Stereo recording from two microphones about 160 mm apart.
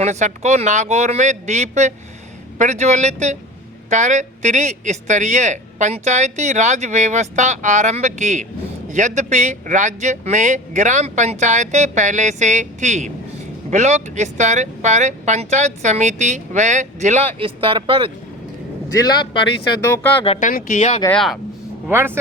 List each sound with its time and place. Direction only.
0.0 s speech: 45° right (ahead or behind)
19.0 s speech: 30° left (ahead or behind)
19.9 s speech: 10° left (ahead or behind)
20.4 s speech: 60° left (ahead or behind)
21.1 s speech: centre (ahead or behind)
21.8 s speech: 15° right (ahead or behind)